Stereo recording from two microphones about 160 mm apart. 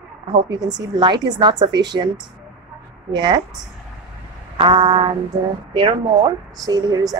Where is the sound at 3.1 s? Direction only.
25° right (ahead or behind).